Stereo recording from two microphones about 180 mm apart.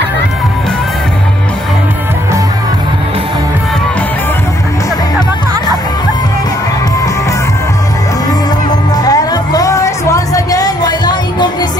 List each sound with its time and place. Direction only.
8.9 s music: 20° left (ahead or behind)